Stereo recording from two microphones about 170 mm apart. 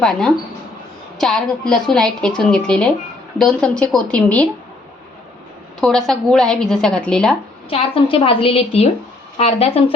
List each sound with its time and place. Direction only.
0.0 s a woman's voice: 5° left (ahead or behind)
5.8 s a woman's voice: centre (ahead or behind)
7.7 s a woman's voice: 35° left (ahead or behind)